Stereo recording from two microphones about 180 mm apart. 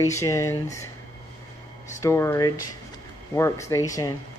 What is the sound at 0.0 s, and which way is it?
Speech, 15° left (ahead or behind).